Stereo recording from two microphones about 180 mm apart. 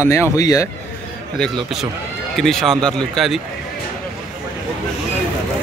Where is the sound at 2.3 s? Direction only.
Centre (ahead or behind).